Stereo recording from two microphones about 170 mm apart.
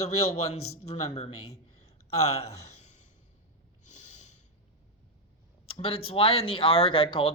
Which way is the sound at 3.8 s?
45° left (ahead or behind).